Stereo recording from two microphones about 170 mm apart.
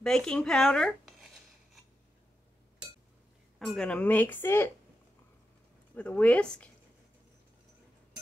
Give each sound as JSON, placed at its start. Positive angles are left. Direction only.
{"t": 0.0, "sound": "speech", "side_deg": 5}
{"t": 3.5, "sound": "speech", "side_deg": 0}
{"t": 5.9, "sound": "speech", "side_deg": 10}